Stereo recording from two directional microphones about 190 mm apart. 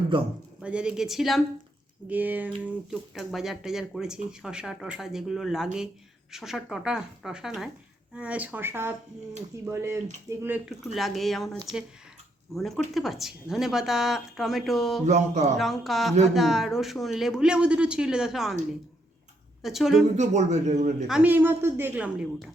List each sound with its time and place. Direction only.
0.6 s a woman's voice: 5° right (ahead or behind)
10.9 s speech: centre (ahead or behind)
12.5 s speech: centre (ahead or behind)
15.0 s speech: 35° right (ahead or behind)
15.5 s speech: centre (ahead or behind)
19.6 s speech: centre (ahead or behind)
20.1 s speech: 40° right (ahead or behind)
21.1 s a woman's voice: 10° right (ahead or behind)